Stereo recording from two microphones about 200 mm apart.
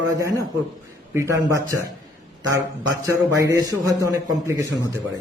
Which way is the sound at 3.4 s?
15° right (ahead or behind).